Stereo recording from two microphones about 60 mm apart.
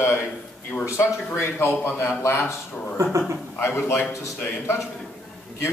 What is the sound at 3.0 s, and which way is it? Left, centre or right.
Speech, right.